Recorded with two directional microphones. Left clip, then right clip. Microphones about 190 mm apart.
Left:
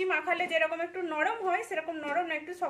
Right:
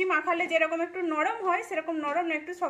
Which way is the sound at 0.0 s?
20° right (ahead or behind).